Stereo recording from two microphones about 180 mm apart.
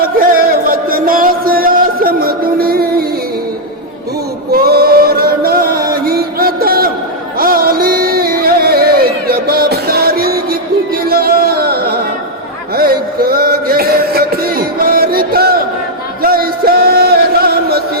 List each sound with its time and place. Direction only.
0.0 s a sound: 50° right (ahead or behind)
4.5 s chant: 60° right (ahead or behind)
7.3 s music: 55° right (ahead or behind)